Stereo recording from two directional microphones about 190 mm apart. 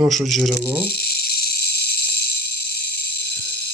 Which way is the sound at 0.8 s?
55° left (ahead or behind).